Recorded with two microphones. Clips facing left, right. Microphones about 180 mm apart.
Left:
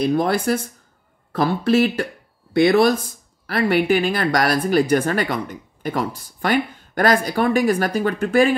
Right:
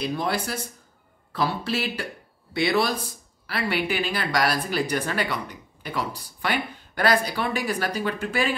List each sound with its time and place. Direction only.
0.0 s speech: 50° left (ahead or behind)